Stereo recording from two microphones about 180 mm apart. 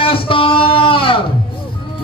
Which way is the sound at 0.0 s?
30° left (ahead or behind).